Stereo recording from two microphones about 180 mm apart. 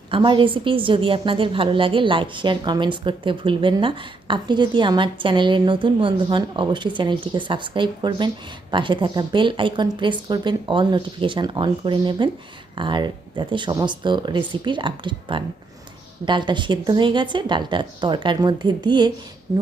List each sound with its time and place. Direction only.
0.1 s a woman's voice: 25° right (ahead or behind)